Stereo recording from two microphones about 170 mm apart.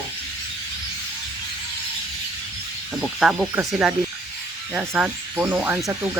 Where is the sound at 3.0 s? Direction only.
5° right (ahead or behind).